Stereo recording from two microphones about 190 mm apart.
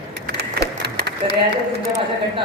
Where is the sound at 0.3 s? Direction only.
60° right (ahead or behind).